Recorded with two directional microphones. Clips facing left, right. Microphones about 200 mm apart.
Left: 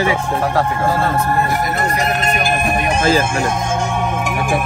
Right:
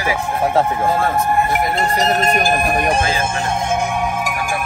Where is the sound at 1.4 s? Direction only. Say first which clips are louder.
Right 1 dB; 25° right (ahead or behind).